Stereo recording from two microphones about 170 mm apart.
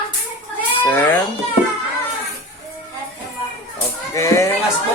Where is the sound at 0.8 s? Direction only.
10° left (ahead or behind).